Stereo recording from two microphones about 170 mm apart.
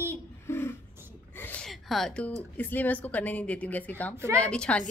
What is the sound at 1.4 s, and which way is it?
A woman's voice, 10° left (ahead or behind).